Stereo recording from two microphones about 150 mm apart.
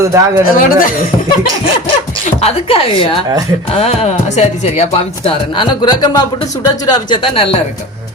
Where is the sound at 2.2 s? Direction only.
45° left (ahead or behind).